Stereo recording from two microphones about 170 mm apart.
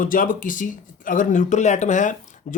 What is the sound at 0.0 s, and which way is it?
Speech, 55° left (ahead or behind).